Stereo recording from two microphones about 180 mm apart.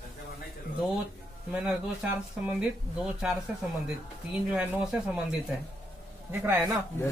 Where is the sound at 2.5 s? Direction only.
5° right (ahead or behind).